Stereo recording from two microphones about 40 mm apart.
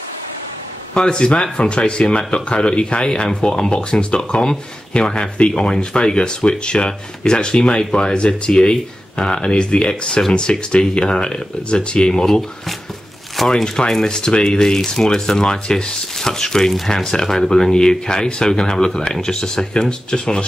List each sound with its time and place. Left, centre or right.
0.9 s speech: left
13.4 s speech: centre
13.7 s speech: centre